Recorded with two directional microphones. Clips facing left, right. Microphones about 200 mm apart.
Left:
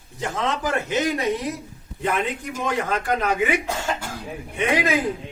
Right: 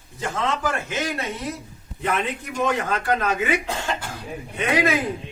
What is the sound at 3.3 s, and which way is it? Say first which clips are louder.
Speech: left 1 dB; 15° left (ahead or behind).